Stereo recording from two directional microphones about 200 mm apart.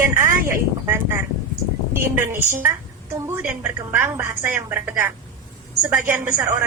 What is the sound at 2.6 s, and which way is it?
A woman's voice, 10° right (ahead or behind).